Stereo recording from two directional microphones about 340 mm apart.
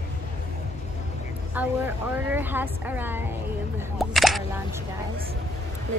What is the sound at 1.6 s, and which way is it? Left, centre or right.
Speech, centre.